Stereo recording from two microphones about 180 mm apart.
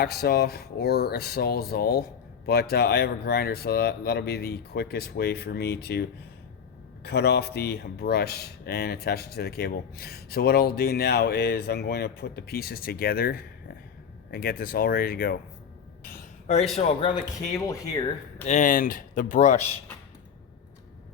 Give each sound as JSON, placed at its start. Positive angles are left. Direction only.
{"t": 0.0, "sound": "speech", "side_deg": 60}
{"t": 16.7, "sound": "a man's voice", "side_deg": 35}
{"t": 17.5, "sound": "speech", "side_deg": 20}
{"t": 18.4, "sound": "speech", "side_deg": 45}